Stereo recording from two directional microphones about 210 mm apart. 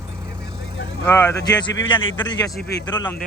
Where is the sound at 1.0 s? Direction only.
10° left (ahead or behind).